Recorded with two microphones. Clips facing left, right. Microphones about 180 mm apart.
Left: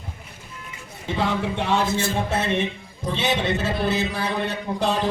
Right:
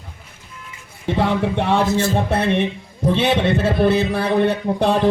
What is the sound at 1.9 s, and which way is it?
Speech, 40° right (ahead or behind).